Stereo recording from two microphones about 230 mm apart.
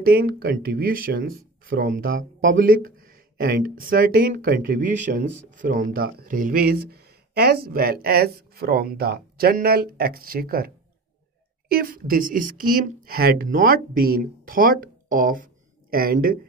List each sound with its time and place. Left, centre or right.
0.0 s speech: right
5.8 s speech: right
11.7 s speech: right